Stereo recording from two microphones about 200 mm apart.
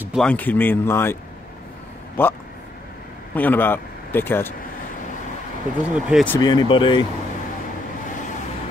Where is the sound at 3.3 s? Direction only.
10° left (ahead or behind).